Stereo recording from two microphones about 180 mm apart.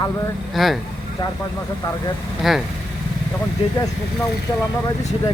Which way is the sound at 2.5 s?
Centre (ahead or behind).